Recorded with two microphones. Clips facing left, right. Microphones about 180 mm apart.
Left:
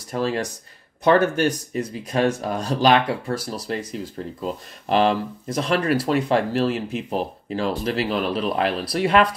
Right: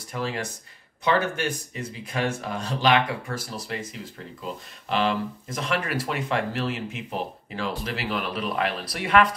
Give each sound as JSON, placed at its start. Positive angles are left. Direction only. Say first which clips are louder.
{"t": 0.1, "sound": "speech", "louder": "left 6 dB", "side_deg": 40}